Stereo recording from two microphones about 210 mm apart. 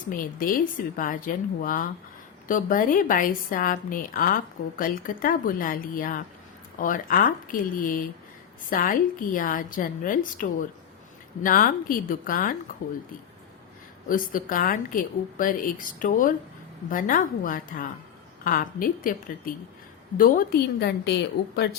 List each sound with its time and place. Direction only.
0.3 s a woman's voice: 40° left (ahead or behind)
14.1 s a woman's voice: 40° left (ahead or behind)